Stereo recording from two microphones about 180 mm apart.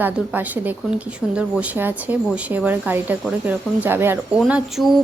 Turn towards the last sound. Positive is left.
turn(degrees=0)  # may be behind; listen again after turning